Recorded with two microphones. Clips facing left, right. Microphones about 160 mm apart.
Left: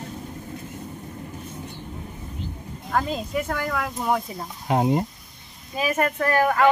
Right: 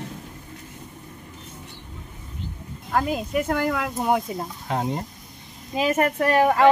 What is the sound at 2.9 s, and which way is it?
Speech, 10° right (ahead or behind).